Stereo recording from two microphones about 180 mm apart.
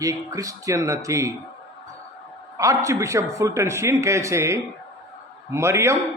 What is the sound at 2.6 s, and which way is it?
A man's voice, 20° right (ahead or behind).